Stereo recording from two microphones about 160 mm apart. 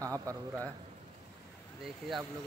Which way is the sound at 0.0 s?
20° right (ahead or behind).